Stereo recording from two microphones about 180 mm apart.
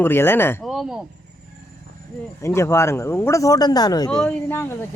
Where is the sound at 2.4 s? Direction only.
15° left (ahead or behind).